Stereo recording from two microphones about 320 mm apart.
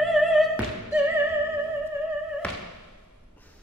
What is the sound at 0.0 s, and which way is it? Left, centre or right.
Opera, centre.